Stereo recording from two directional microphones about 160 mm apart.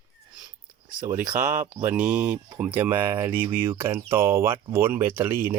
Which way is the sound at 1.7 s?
15° right (ahead or behind).